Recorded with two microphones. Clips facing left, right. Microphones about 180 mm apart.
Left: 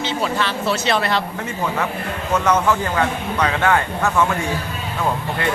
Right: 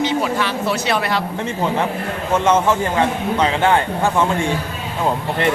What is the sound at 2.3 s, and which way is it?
A man's voice, 25° right (ahead or behind).